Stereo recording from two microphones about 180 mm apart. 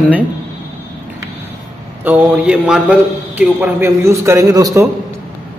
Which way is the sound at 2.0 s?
10° right (ahead or behind).